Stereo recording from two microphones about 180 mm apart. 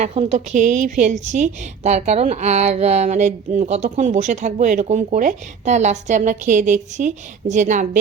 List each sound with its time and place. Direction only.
0.0 s a woman's voice: 35° right (ahead or behind)